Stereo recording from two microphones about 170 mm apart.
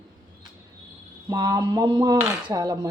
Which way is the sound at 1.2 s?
20° right (ahead or behind).